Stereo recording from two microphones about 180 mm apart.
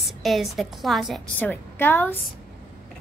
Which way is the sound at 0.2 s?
Centre (ahead or behind).